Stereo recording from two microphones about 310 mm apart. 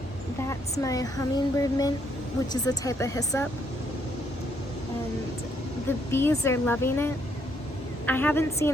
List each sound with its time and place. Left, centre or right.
0.4 s speech: centre
6.1 s speech: centre